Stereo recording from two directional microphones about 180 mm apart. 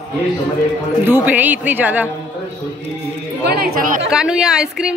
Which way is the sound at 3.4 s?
60° right (ahead or behind).